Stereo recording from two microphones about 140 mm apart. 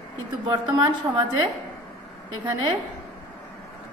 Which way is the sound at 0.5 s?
30° right (ahead or behind).